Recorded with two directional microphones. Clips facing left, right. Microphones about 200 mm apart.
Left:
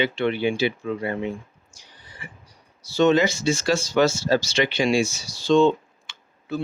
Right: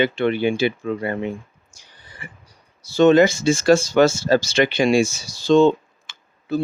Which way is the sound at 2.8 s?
50° right (ahead or behind).